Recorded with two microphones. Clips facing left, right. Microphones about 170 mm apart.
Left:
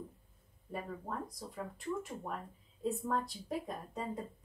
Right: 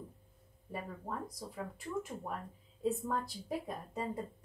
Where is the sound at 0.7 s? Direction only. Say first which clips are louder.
Left 1 dB; 5° right (ahead or behind).